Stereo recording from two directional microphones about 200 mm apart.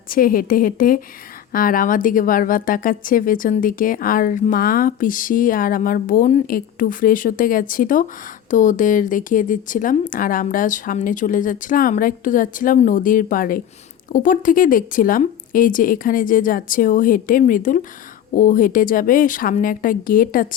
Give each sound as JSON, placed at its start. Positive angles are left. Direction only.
{"t": 0.1, "sound": "a woman's voice", "side_deg": 45}